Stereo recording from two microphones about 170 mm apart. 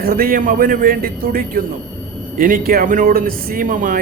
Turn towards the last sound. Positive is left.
turn(degrees=-50)  # may be behind; listen again after turning